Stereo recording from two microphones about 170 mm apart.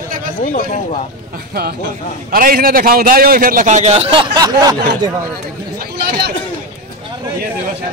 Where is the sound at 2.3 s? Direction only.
55° right (ahead or behind); by 4.7 s 20° right (ahead or behind).